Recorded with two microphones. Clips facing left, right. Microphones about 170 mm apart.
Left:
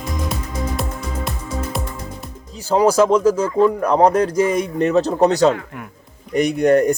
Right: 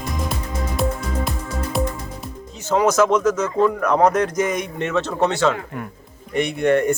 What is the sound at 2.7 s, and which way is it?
Speech, 35° left (ahead or behind).